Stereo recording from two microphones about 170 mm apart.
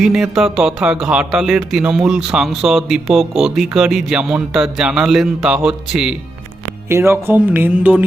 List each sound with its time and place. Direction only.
0.0 s a man's voice: centre (ahead or behind)
6.8 s music: 15° right (ahead or behind)